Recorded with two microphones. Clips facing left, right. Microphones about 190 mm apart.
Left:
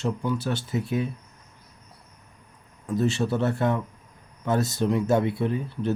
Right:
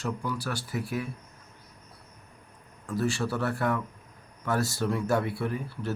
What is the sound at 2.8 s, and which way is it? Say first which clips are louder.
Speech: left 4 dB; 20° left (ahead or behind).